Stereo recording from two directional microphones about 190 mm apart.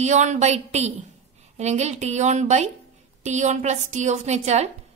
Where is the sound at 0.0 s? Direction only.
40° right (ahead or behind).